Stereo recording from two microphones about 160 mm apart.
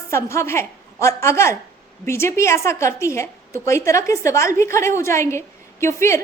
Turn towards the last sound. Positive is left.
turn(degrees=15)  # may be behind; listen again after turning